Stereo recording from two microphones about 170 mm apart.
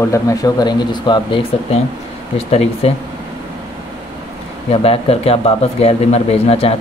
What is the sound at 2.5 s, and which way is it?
Speech, 35° left (ahead or behind).